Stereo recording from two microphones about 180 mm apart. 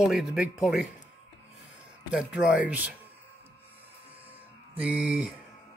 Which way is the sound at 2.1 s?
5° right (ahead or behind).